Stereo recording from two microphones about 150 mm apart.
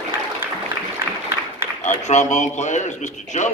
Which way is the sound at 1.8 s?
50° left (ahead or behind).